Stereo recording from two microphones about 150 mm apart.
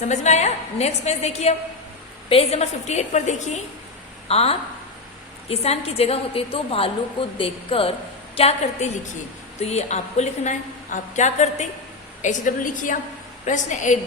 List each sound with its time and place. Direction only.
0.0 s a woman's voice: 50° left (ahead or behind)